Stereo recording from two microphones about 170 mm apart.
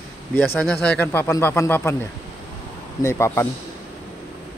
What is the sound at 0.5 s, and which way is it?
Speech, 5° left (ahead or behind).